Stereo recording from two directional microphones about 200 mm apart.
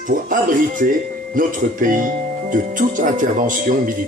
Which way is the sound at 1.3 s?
40° right (ahead or behind).